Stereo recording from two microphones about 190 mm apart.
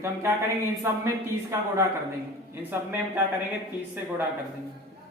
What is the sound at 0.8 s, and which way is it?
Speech, 15° right (ahead or behind).